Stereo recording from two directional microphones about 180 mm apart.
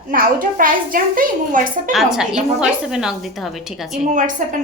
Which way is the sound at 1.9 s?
Centre (ahead or behind).